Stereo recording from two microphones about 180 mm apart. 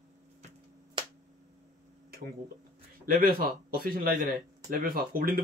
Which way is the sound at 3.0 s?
55° right (ahead or behind).